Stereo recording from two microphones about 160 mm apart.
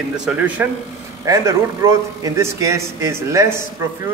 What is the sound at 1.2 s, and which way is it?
A man's voice, 20° right (ahead or behind).